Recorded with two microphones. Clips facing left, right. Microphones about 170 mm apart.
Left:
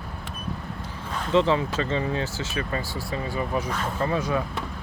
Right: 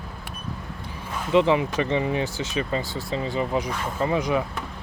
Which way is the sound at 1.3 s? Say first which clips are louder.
Right 2 dB; 15° right (ahead or behind).